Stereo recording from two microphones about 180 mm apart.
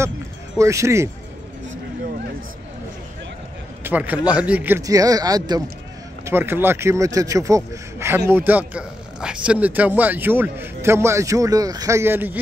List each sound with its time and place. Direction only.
0.6 s speech: 15° right (ahead or behind)
3.8 s a man's voice: 10° right (ahead or behind)